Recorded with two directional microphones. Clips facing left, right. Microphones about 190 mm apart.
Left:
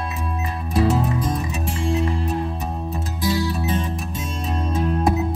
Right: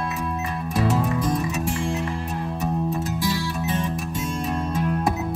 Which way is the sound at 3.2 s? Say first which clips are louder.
Left 3 dB; 20° left (ahead or behind).